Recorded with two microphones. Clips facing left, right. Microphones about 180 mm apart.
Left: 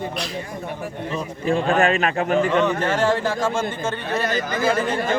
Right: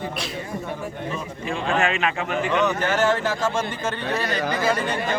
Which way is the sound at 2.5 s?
30° left (ahead or behind).